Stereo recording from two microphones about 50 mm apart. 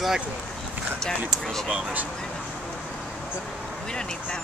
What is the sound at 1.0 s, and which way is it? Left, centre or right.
Speech, centre.